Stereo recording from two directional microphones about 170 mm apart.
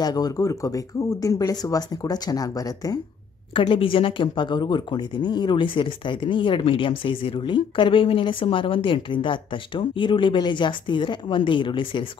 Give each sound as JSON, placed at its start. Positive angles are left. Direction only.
{"t": 0.0, "sound": "speech", "side_deg": 25}